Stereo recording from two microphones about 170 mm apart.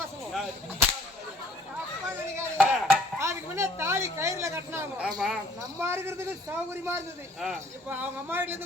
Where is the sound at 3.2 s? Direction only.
15° right (ahead or behind).